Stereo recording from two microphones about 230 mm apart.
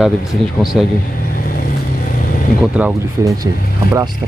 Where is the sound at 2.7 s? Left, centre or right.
Centre.